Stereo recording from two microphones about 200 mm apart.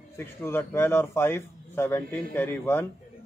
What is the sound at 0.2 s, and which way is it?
A man's voice, 10° left (ahead or behind).